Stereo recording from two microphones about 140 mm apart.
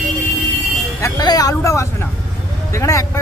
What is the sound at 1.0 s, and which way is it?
Speech, 25° left (ahead or behind).